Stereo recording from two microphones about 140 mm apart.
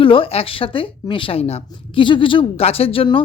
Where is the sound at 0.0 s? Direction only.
40° left (ahead or behind).